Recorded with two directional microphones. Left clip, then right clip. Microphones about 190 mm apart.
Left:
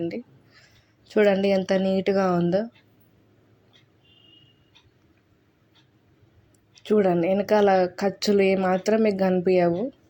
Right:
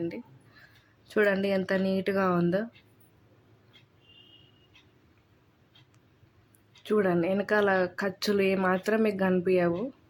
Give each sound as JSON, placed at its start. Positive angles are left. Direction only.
{"t": 1.0, "sound": "speech", "side_deg": 15}
{"t": 6.8, "sound": "speech", "side_deg": 15}